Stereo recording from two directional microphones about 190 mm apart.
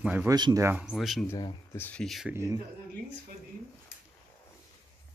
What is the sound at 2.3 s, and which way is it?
Speech, 15° right (ahead or behind).